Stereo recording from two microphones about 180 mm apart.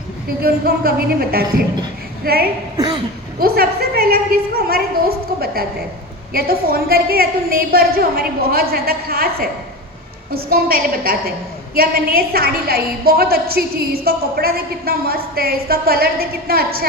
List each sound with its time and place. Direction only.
0.4 s a woman's voice: 60° right (ahead or behind)
2.7 s a sound: 25° right (ahead or behind)
3.3 s a woman's voice: 60° right (ahead or behind)
10.5 s a woman's voice: 55° right (ahead or behind)